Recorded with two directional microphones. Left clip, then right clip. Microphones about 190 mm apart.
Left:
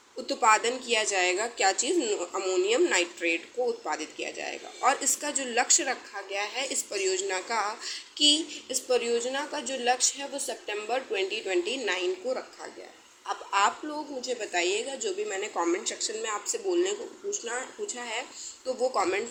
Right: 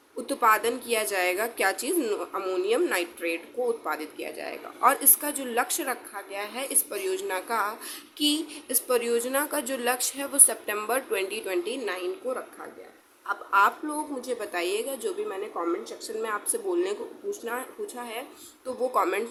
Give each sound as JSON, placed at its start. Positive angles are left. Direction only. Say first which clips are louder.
{"t": 0.3, "sound": "a woman's voice", "louder": "right 1 dB", "side_deg": -30}
{"t": 14.2, "sound": "a woman's voice", "louder": "left 5 dB", "side_deg": -40}
{"t": 15.8, "sound": "a woman's voice", "louder": "even", "side_deg": -20}